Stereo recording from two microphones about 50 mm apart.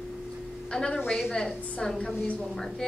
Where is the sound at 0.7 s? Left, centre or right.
Centre.